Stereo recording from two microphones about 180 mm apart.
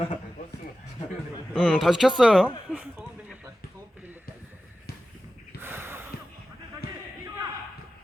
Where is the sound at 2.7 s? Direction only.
10° right (ahead or behind).